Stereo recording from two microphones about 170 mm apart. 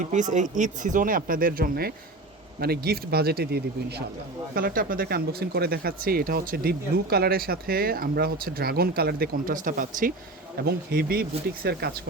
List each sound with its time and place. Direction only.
0.0 s speech: 45° right (ahead or behind); by 4.0 s 70° right (ahead or behind)
4.5 s speech: 55° right (ahead or behind)